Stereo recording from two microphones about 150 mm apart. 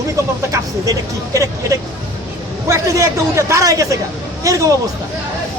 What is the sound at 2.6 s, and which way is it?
Speech, 20° right (ahead or behind).